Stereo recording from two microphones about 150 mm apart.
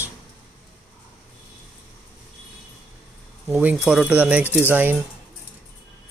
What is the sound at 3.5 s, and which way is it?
Speech, 10° right (ahead or behind).